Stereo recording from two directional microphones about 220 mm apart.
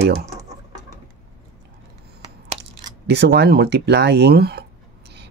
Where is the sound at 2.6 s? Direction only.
50° right (ahead or behind).